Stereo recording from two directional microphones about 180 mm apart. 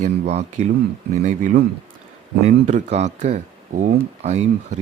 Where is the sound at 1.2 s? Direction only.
45° right (ahead or behind).